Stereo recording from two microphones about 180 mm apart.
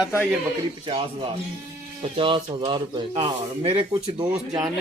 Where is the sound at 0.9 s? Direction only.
30° right (ahead or behind).